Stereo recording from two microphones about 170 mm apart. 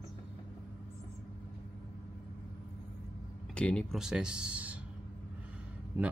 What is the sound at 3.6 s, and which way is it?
Speech, 5° left (ahead or behind).